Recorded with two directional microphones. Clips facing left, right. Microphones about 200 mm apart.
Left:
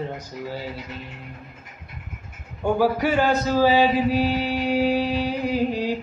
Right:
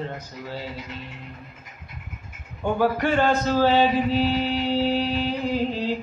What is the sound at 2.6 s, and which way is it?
A man's voice, 10° left (ahead or behind).